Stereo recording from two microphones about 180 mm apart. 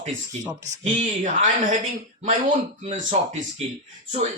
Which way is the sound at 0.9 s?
45° right (ahead or behind).